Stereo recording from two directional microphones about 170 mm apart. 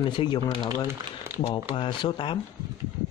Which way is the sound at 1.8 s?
30° left (ahead or behind).